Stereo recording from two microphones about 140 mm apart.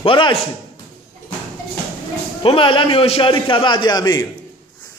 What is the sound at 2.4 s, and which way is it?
A man's voice, 40° left (ahead or behind).